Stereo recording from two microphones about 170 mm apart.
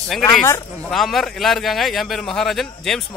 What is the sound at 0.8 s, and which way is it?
A man's voice, centre (ahead or behind).